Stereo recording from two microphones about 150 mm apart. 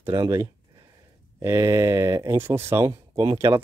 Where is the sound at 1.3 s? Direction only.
20° right (ahead or behind).